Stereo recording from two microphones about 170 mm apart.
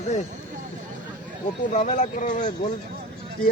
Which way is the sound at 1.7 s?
45° left (ahead or behind).